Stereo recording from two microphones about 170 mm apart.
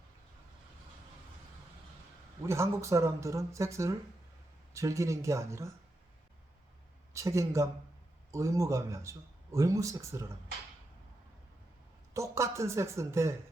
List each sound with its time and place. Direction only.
2.4 s speech: 15° right (ahead or behind)
7.1 s speech: 15° right (ahead or behind)
12.1 s speech: 15° right (ahead or behind)